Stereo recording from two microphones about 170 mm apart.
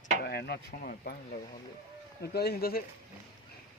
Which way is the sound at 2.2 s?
70° left (ahead or behind).